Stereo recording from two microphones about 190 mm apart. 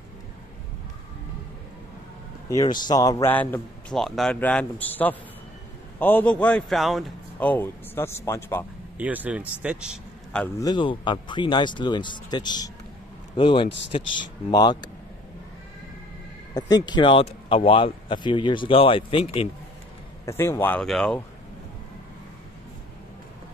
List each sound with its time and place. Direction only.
2.5 s a man's voice: 20° left (ahead or behind)
8.9 s a man's voice: 10° right (ahead or behind)
10.6 s speech: 25° left (ahead or behind)
14.5 s speech: 20° left (ahead or behind)
16.5 s speech: 20° left (ahead or behind)
20.2 s a man's voice: 15° left (ahead or behind)